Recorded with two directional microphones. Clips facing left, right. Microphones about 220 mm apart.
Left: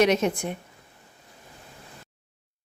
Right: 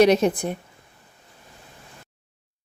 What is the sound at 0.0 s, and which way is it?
Speech, 35° right (ahead or behind).